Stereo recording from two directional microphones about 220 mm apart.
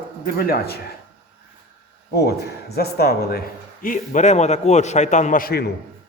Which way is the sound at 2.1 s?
45° left (ahead or behind).